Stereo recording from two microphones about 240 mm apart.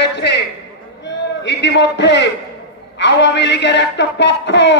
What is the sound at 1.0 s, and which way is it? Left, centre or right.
A man's voice, left.